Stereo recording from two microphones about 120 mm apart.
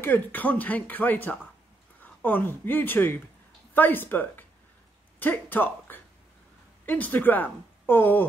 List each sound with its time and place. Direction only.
0.0 s speech: 15° left (ahead or behind)